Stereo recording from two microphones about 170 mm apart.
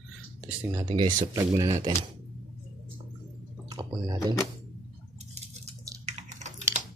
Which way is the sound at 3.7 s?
25° right (ahead or behind).